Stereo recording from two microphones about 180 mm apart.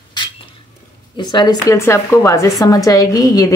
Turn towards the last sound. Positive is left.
turn(degrees=20)  # may be behind; listen again after turning